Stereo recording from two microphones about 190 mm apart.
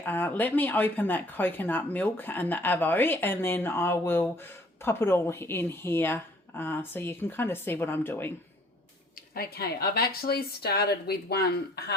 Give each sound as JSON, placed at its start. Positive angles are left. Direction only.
{"t": 0.0, "sound": "speech", "side_deg": 10}
{"t": 9.3, "sound": "a woman's voice", "side_deg": 55}